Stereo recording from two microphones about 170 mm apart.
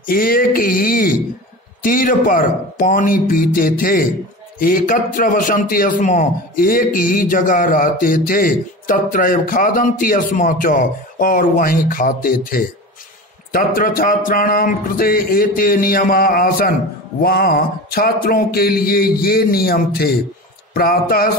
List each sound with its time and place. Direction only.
0.0 s a man's voice: 55° left (ahead or behind)